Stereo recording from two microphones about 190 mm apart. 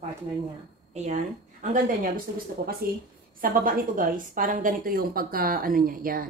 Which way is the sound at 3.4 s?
50° right (ahead or behind).